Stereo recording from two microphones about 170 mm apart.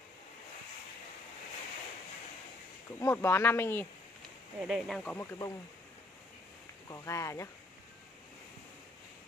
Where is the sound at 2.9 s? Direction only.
15° left (ahead or behind).